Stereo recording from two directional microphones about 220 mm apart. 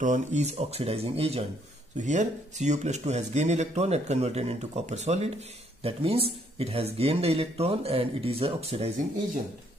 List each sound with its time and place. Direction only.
0.0 s speech: 35° right (ahead or behind)